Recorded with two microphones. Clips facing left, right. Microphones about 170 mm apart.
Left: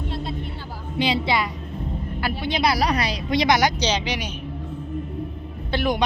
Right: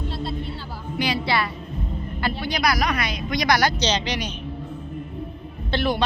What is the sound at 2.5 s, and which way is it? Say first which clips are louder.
Speech: left 3 dB; 25° left (ahead or behind).